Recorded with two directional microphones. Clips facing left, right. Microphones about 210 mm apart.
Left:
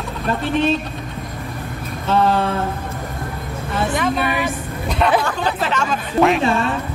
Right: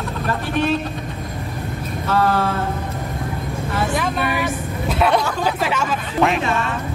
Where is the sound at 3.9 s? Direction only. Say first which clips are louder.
Left 2 dB; centre (ahead or behind).